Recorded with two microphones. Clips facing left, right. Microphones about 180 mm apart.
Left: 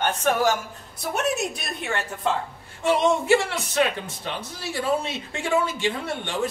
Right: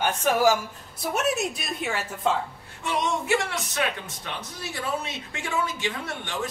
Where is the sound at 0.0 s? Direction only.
10° right (ahead or behind).